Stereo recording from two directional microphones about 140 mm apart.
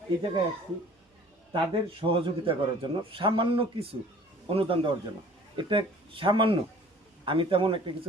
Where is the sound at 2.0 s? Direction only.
40° right (ahead or behind).